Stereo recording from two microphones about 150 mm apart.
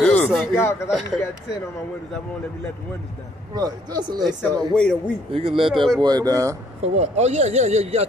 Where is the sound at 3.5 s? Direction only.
25° right (ahead or behind).